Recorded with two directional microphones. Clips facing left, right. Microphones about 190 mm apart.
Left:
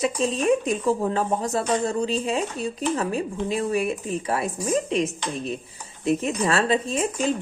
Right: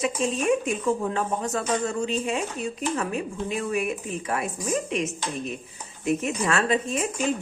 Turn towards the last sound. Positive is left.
turn(degrees=35)  # may be behind; listen again after turning